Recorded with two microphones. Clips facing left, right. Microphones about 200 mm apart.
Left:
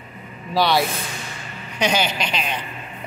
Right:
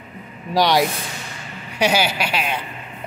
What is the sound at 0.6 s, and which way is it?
Speech, 15° right (ahead or behind).